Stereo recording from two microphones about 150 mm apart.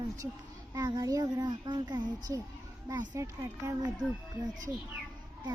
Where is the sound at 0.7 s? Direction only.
25° right (ahead or behind).